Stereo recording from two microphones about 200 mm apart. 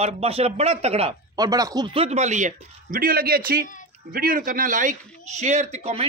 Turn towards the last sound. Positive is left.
turn(degrees=-30)  # may be behind; listen again after turning